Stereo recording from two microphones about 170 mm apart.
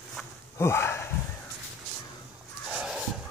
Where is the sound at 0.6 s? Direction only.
15° left (ahead or behind).